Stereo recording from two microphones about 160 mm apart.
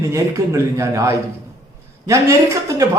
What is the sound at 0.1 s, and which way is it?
Speech, 20° right (ahead or behind).